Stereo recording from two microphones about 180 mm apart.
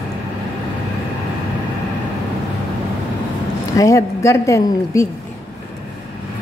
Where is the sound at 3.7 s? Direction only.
20° left (ahead or behind).